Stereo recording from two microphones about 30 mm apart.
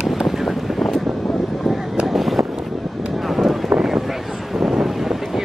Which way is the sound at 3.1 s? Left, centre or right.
Centre.